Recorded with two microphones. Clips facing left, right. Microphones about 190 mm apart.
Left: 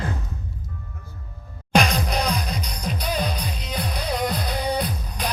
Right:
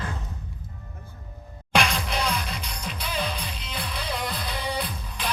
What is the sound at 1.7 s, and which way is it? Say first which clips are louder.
Music: left 4 dB; 40° left (ahead or behind).